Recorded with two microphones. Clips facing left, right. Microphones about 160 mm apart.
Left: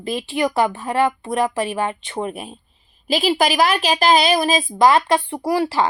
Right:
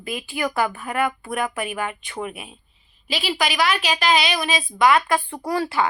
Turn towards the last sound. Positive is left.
turn(degrees=25)  # may be behind; listen again after turning